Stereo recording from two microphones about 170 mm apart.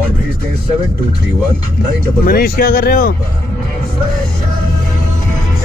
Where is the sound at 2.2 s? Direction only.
60° left (ahead or behind).